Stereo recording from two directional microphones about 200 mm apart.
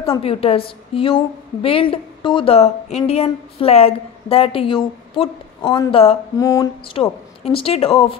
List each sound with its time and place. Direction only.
0.2 s a woman's voice: 30° left (ahead or behind)
6.3 s a sound: 15° left (ahead or behind)
6.9 s a woman's voice: 25° left (ahead or behind)